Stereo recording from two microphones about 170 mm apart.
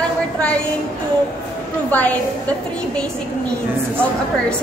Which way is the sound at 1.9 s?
10° left (ahead or behind).